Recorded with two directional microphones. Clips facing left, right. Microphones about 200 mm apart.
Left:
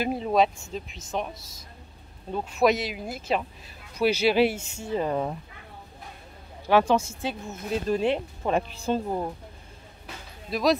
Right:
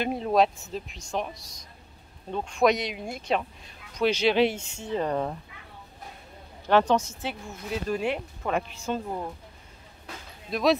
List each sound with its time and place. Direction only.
0.0 s speech: centre (ahead or behind)
6.7 s a woman's voice: 10° left (ahead or behind)
7.9 s speech: 30° left (ahead or behind)
10.5 s speech: centre (ahead or behind)